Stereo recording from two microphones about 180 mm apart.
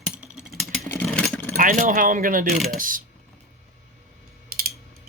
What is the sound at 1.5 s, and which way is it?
Speech, 45° right (ahead or behind).